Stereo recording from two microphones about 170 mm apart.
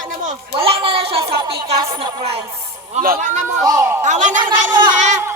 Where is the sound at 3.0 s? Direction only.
60° right (ahead or behind).